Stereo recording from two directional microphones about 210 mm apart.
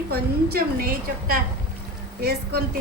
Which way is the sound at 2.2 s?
50° right (ahead or behind).